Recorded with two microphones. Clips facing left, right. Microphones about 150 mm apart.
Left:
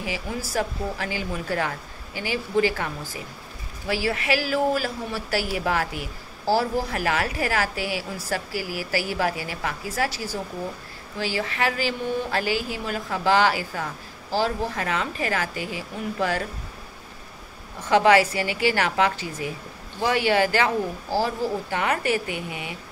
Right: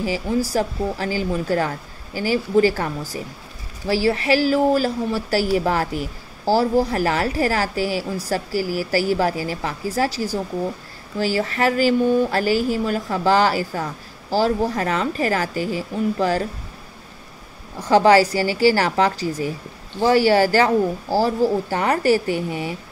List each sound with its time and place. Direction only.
0.0 s a woman's voice: 35° right (ahead or behind)
17.7 s a woman's voice: 35° right (ahead or behind)